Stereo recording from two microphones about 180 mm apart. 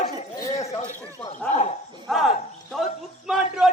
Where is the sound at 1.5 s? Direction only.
40° left (ahead or behind).